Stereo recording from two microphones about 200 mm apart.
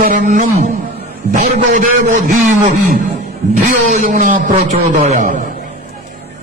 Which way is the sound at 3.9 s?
35° right (ahead or behind).